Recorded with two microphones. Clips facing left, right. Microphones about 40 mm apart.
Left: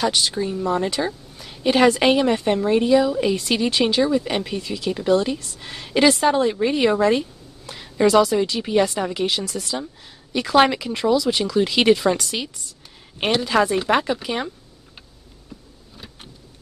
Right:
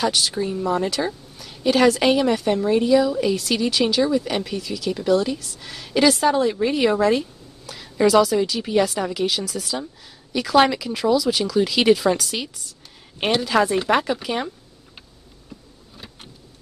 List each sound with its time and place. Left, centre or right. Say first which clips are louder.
0.0 s a woman's voice: left 1 dB; centre
0.4 s a woman's voice: even; centre
0.7 s a woman's voice: even; centre
5.9 s a woman's voice: left 1 dB; centre